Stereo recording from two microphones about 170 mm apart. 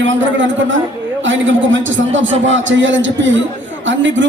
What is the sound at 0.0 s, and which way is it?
Speech, 90° right.